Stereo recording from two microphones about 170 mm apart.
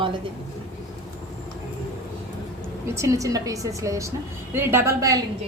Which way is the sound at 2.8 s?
15° right (ahead or behind).